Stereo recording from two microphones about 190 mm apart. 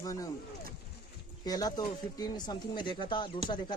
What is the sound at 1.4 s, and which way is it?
Speech, 20° left (ahead or behind).